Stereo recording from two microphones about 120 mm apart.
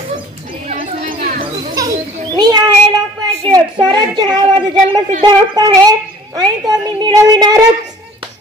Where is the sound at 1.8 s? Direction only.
30° right (ahead or behind).